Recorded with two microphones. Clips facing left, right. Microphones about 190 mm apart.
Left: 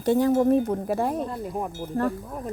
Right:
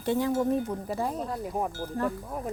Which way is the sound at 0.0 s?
45° left (ahead or behind).